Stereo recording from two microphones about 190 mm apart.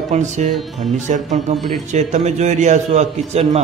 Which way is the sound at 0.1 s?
40° right (ahead or behind).